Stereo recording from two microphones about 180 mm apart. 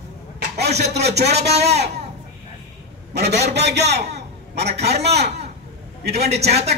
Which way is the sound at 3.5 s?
70° right (ahead or behind).